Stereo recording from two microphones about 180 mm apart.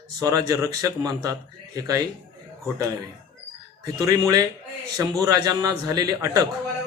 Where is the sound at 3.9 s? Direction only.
20° right (ahead or behind).